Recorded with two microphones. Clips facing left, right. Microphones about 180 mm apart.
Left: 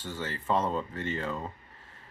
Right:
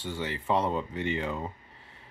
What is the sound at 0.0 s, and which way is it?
Speech, 15° right (ahead or behind).